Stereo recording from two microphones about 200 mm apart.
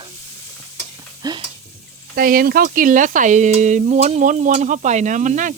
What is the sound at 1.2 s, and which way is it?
Stir, 20° right (ahead or behind).